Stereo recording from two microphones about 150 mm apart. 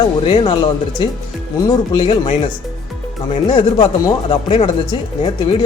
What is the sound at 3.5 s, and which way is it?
Speech, 35° left (ahead or behind).